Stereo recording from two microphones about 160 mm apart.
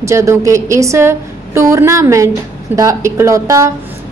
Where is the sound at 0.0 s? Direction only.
15° right (ahead or behind).